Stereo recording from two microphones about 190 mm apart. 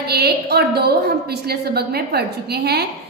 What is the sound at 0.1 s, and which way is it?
A woman's voice, 60° right (ahead or behind).